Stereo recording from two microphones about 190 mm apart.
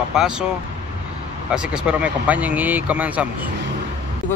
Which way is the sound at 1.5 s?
5° right (ahead or behind).